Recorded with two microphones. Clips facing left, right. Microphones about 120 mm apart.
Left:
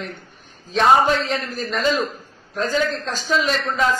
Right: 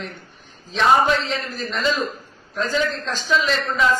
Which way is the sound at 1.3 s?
50° left (ahead or behind).